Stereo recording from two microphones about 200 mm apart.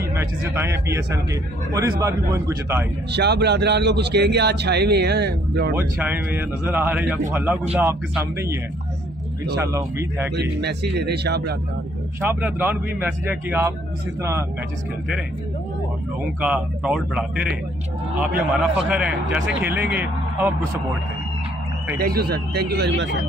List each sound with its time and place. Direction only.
0.1 s a man's voice: 10° right (ahead or behind)
3.1 s a man's voice: 55° right (ahead or behind)
5.8 s a man's voice: 10° right (ahead or behind)
9.6 s a man's voice: 15° right (ahead or behind)
10.3 s a man's voice: 55° right (ahead or behind)
12.2 s a man's voice: 10° right (ahead or behind)
16.2 s a man's voice: 5° right (ahead or behind)
18.9 s a man's voice: 5° right (ahead or behind)
21.9 s speech: 50° right (ahead or behind)